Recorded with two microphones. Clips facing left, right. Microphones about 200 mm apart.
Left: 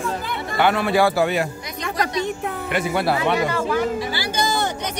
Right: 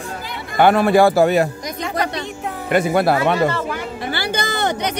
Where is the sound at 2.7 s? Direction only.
45° right (ahead or behind).